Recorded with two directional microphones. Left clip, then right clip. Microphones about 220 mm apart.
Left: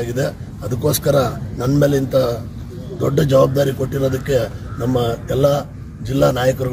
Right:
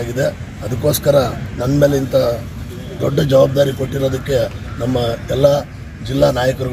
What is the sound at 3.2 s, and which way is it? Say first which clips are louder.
A man's voice: right 2 dB; 30° left (ahead or behind).